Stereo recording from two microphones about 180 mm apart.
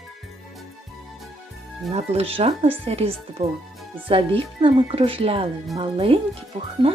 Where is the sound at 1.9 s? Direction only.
35° right (ahead or behind).